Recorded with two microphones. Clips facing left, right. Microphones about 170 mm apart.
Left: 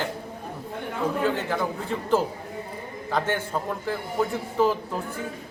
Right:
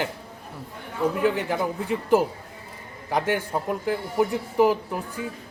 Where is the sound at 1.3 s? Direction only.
15° right (ahead or behind).